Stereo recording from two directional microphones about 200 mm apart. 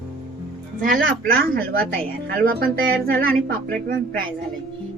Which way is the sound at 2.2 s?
50° right (ahead or behind).